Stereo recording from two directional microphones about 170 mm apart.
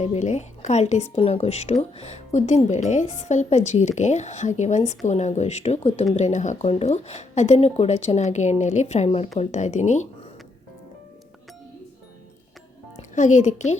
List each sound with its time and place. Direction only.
0.0 s a woman's voice: 40° left (ahead or behind)
13.0 s music: 45° left (ahead or behind)